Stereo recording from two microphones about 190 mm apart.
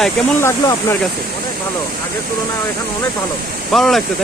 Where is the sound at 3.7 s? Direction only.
Centre (ahead or behind).